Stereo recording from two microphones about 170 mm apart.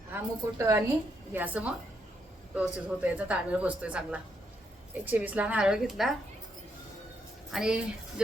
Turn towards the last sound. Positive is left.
turn(degrees=-5)  # may be behind; listen again after turning